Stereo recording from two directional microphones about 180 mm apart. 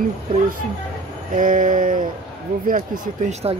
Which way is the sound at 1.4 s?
50° right (ahead or behind).